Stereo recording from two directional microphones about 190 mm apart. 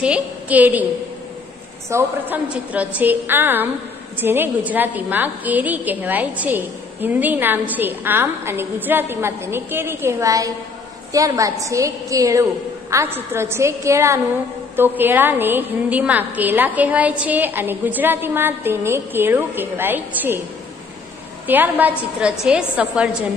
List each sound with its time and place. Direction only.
0.0 s a woman's voice: 5° right (ahead or behind)
1.9 s a woman's voice: 10° right (ahead or behind)
21.5 s a woman's voice: 10° right (ahead or behind)